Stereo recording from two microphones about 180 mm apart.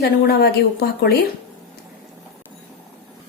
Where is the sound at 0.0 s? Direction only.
60° left (ahead or behind).